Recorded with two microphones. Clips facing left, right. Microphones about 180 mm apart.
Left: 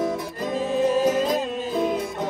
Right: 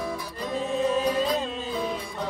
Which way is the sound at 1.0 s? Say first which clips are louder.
Left 4 dB; 45° left (ahead or behind).